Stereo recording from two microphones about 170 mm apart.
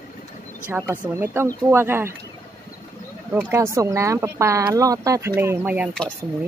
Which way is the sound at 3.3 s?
10° right (ahead or behind).